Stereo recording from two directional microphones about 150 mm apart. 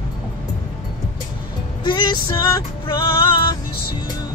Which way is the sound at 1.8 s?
30° left (ahead or behind).